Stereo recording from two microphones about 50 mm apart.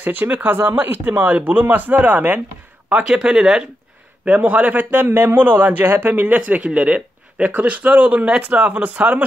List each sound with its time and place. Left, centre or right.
0.0 s a man's voice: right
2.9 s speech: centre
4.3 s a man's voice: right
4.9 s a man's voice: right